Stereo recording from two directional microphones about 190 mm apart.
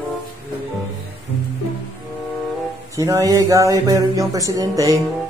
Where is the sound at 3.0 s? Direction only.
15° right (ahead or behind).